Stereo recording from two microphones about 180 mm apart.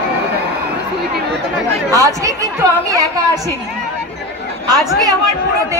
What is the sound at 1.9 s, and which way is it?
A woman's voice, 20° right (ahead or behind).